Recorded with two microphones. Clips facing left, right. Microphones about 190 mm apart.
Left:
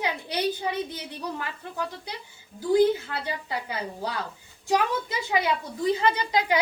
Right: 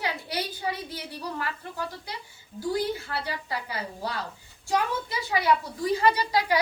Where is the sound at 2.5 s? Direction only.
20° left (ahead or behind).